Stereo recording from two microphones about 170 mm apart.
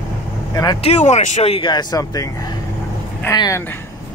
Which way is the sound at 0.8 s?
40° left (ahead or behind).